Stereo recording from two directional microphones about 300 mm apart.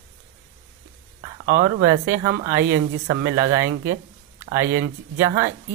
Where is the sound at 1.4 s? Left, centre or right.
Right.